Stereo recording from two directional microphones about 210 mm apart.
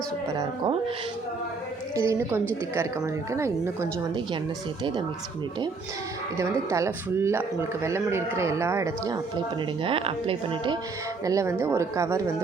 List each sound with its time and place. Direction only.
2.0 s speech: 10° right (ahead or behind)
6.3 s speech: 15° right (ahead or behind)
11.3 s speech: 15° right (ahead or behind)